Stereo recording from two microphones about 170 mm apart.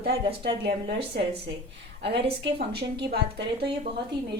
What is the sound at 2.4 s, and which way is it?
A woman's voice, 75° right (ahead or behind).